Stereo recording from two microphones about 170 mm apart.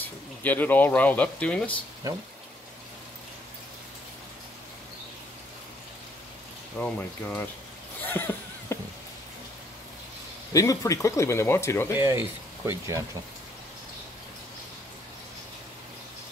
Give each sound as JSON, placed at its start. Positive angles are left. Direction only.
{"t": 0.0, "sound": "speech", "side_deg": 10}
{"t": 6.8, "sound": "speech", "side_deg": 10}
{"t": 8.0, "sound": "a sound", "side_deg": 10}
{"t": 10.5, "sound": "speech", "side_deg": 20}
{"t": 12.0, "sound": "speech", "side_deg": -10}